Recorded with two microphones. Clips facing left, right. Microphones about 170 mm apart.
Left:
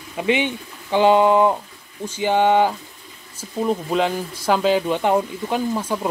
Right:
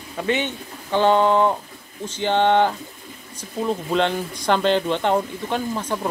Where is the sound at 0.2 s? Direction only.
10° left (ahead or behind).